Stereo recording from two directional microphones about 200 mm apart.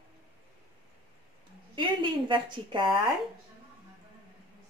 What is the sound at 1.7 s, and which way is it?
A woman's voice, 25° right (ahead or behind).